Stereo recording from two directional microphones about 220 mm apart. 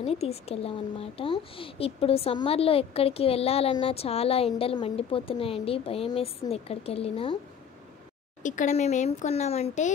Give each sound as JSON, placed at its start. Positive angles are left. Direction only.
{"t": 0.0, "sound": "speech", "side_deg": 25}
{"t": 8.4, "sound": "speech", "side_deg": 35}